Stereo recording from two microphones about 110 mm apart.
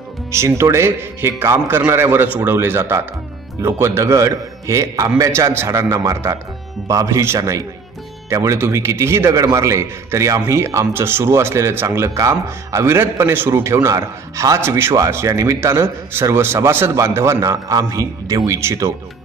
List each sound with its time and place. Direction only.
0.3 s a man's voice: 25° right (ahead or behind)